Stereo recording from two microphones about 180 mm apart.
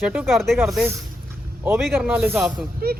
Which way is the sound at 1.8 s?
Centre (ahead or behind).